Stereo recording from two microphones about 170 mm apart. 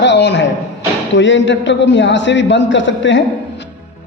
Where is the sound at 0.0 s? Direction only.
90° left.